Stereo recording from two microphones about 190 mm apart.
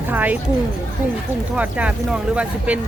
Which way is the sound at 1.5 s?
5° right (ahead or behind).